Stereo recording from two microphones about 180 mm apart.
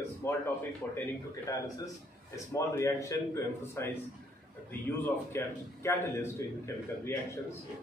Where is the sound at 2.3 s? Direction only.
15° left (ahead or behind).